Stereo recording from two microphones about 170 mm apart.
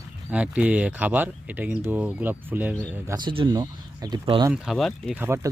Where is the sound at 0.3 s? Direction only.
10° right (ahead or behind).